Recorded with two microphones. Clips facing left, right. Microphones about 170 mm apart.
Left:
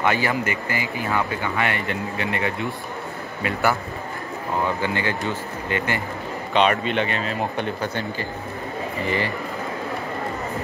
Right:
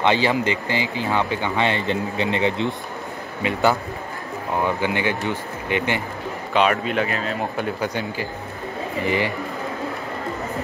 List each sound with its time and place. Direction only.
0.0 s speech: 25° right (ahead or behind)
4.6 s speech: 15° right (ahead or behind)
6.5 s speech: 5° right (ahead or behind)
7.8 s speech: 15° right (ahead or behind)